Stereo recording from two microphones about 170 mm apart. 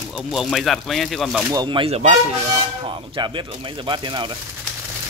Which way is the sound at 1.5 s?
25° right (ahead or behind).